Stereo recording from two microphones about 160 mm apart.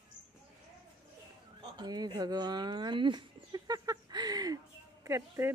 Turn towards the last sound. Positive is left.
turn(degrees=-20)  # may be behind; listen again after turning